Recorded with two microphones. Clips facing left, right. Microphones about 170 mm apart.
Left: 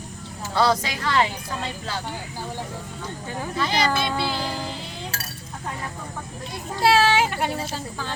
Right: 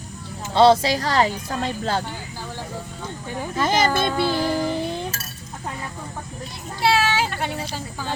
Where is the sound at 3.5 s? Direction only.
45° right (ahead or behind).